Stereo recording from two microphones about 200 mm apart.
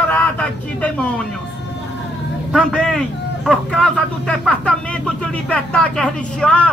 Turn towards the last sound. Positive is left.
turn(degrees=5)  # may be behind; listen again after turning